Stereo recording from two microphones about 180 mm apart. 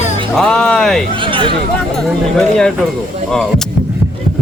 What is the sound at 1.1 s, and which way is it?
Speech, 30° right (ahead or behind).